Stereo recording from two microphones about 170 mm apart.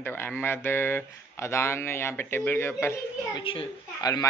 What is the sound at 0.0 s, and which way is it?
Speech, 15° left (ahead or behind).